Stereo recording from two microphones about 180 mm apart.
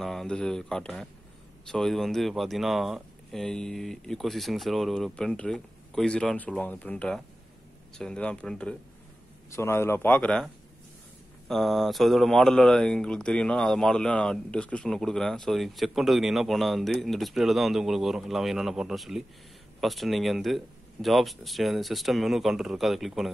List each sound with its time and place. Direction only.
0.0 s a man's voice: centre (ahead or behind)